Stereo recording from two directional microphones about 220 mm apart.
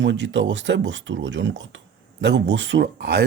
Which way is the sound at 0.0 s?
55° right (ahead or behind).